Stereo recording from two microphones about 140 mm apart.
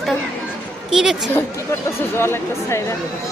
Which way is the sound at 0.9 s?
5° right (ahead or behind).